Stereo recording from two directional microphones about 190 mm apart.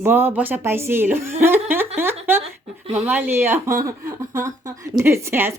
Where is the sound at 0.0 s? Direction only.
10° right (ahead or behind).